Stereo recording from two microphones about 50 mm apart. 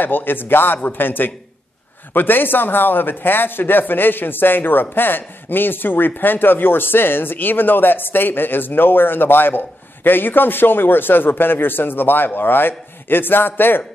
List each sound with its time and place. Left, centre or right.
0.0 s a man's voice: left